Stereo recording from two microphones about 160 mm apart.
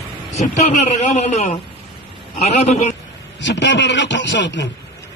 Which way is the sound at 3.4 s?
90° left.